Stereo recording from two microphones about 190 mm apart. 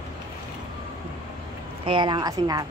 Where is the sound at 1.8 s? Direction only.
25° right (ahead or behind).